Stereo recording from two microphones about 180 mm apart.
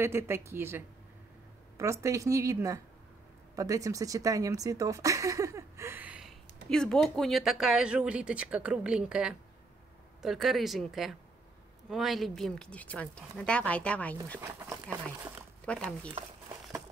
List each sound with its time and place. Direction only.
0.0 s speech: 15° right (ahead or behind); by 14.1 s 5° left (ahead or behind)
14.4 s speech: 15° right (ahead or behind)
15.6 s speech: 5° left (ahead or behind)